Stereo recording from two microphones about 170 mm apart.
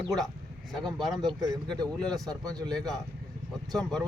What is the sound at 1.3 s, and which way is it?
Speech, 25° right (ahead or behind).